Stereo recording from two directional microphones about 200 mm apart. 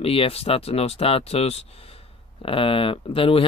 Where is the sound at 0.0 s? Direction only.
30° left (ahead or behind).